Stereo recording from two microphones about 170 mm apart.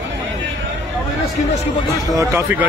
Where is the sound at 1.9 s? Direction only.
20° right (ahead or behind).